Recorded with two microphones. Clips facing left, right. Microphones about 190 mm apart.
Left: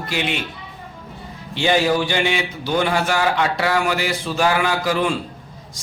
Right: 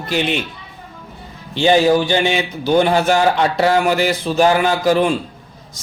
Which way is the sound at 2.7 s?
35° right (ahead or behind).